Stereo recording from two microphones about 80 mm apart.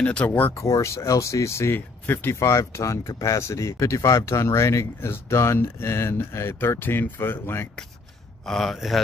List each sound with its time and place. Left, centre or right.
0.0 s speech: centre
0.6 s speech: left
2.3 s speech: left
8.5 s speech: centre